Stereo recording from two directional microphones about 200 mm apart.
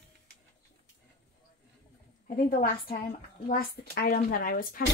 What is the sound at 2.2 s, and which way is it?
Speech, 45° left (ahead or behind).